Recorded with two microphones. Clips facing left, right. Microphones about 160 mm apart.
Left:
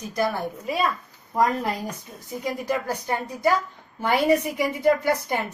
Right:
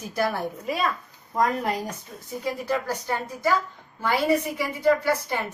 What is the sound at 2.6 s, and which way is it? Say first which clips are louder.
A woman's voice: left 1 dB; 15° left (ahead or behind).